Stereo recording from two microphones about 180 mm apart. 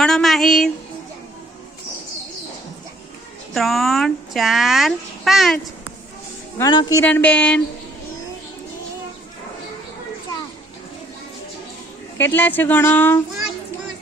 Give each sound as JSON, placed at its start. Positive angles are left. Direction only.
{"t": 0.0, "sound": "a sound", "side_deg": 0}
{"t": 3.5, "sound": "speech", "side_deg": 0}
{"t": 6.6, "sound": "speech", "side_deg": 25}
{"t": 7.0, "sound": "speech", "side_deg": 10}
{"t": 12.1, "sound": "speech", "side_deg": 10}